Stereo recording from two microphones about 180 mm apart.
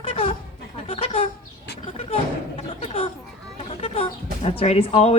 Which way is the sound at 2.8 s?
30° left (ahead or behind).